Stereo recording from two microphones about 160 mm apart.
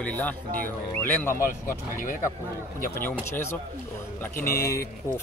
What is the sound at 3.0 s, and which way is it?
Speech, 15° left (ahead or behind).